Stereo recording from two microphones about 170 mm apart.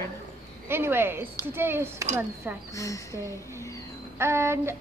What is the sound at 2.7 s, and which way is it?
Speech, 20° left (ahead or behind).